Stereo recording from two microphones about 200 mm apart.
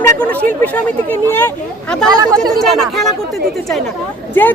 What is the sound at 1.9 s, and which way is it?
Speech, 5° left (ahead or behind).